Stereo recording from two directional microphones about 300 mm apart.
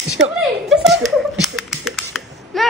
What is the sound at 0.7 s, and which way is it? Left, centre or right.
Laughter, centre.